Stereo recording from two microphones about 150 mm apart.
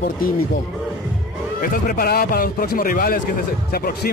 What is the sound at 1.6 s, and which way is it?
A man's voice, 75° left (ahead or behind).